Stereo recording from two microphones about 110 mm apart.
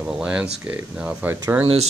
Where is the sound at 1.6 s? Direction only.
65° right (ahead or behind).